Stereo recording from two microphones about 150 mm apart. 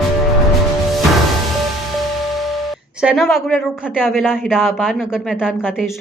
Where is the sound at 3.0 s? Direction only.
Centre (ahead or behind).